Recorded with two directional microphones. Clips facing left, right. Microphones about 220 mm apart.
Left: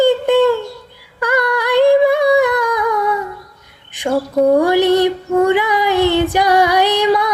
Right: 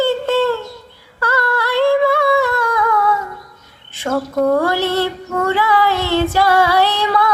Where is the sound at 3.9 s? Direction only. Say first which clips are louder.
Left 2 dB; 15° left (ahead or behind).